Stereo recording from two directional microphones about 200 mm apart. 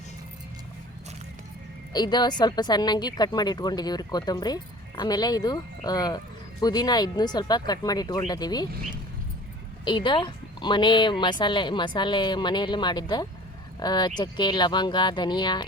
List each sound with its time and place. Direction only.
1.9 s speech: 20° left (ahead or behind)
9.8 s speech: 25° left (ahead or behind)